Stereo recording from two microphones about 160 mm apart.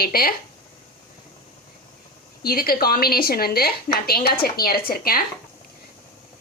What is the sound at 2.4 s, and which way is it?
A woman's voice, 70° left (ahead or behind).